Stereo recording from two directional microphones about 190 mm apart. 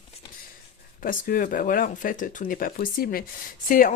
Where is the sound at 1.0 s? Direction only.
45° left (ahead or behind).